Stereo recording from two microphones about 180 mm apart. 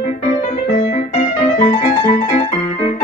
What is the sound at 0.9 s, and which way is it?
Music, 40° left (ahead or behind).